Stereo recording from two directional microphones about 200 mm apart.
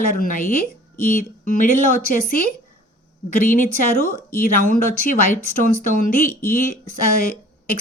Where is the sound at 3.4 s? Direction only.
40° left (ahead or behind).